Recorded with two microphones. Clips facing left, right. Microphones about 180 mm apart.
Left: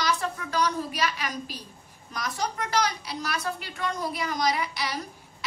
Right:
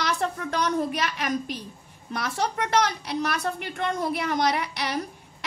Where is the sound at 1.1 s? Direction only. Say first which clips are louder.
Right 6 dB; 60° right (ahead or behind).